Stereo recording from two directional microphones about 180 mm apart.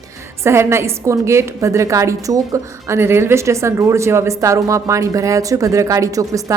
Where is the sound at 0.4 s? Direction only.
15° right (ahead or behind).